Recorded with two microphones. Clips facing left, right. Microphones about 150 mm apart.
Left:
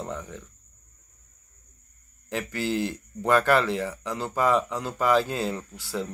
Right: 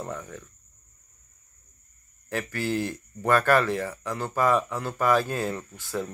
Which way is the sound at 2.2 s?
15° left (ahead or behind).